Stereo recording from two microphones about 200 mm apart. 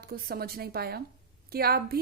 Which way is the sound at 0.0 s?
50° right (ahead or behind).